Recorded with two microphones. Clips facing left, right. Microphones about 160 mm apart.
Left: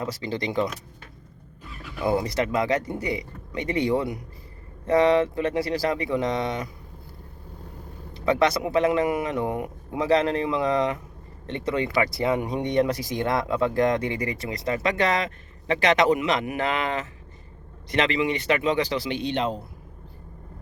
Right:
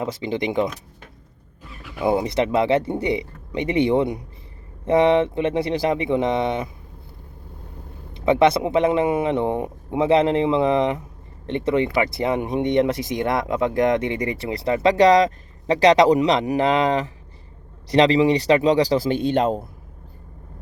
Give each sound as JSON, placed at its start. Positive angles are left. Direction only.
{"t": 0.0, "sound": "speech", "side_deg": -20}
{"t": 2.0, "sound": "speech", "side_deg": -20}
{"t": 8.1, "sound": "speech", "side_deg": -20}